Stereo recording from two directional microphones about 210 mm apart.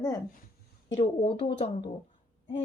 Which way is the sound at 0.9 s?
30° left (ahead or behind).